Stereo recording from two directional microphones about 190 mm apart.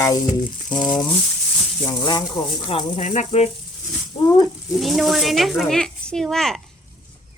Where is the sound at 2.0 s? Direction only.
20° left (ahead or behind).